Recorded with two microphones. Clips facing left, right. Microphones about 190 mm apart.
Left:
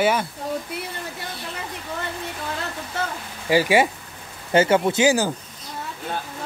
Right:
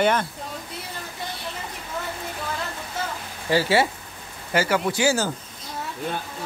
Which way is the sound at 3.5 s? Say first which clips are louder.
Left 2 dB; 15° left (ahead or behind).